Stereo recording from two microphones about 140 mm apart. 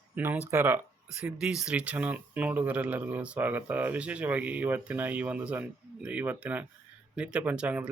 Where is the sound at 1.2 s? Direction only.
5° right (ahead or behind).